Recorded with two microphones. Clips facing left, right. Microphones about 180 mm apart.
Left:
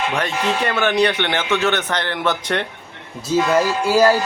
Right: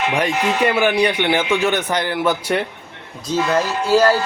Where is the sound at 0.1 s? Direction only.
10° right (ahead or behind).